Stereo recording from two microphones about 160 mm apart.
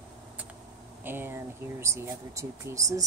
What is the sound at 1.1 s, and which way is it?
Speech, 15° right (ahead or behind).